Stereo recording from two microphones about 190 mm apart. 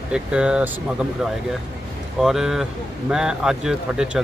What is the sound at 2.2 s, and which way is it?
Speech, centre (ahead or behind).